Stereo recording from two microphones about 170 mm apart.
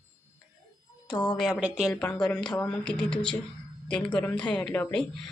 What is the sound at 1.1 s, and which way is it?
Speech, 25° left (ahead or behind).